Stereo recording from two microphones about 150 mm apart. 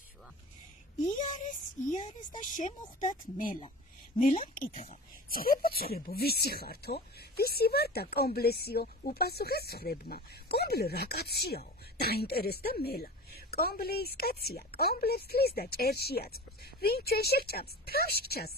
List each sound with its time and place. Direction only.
1.0 s a woman's voice: 55° left (ahead or behind)
5.3 s speech: 80° left
5.8 s speech: 90° left